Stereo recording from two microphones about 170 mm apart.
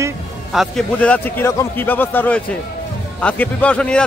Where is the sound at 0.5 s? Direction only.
Centre (ahead or behind).